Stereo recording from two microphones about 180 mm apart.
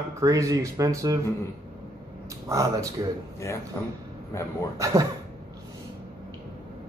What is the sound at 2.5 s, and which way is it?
Speech, 20° right (ahead or behind).